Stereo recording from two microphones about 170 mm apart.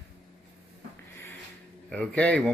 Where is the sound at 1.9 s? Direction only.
10° left (ahead or behind).